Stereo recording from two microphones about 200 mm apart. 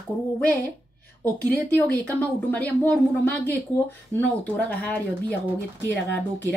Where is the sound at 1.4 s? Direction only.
10° left (ahead or behind).